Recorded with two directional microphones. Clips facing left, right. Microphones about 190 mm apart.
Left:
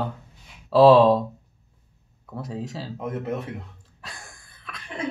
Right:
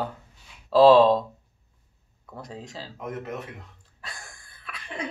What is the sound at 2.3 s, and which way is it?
Speech, 5° left (ahead or behind).